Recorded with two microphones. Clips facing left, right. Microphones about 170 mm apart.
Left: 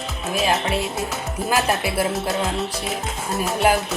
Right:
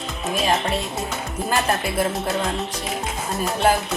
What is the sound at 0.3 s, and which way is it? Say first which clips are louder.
Speech: left 1 dB; 5° left (ahead or behind).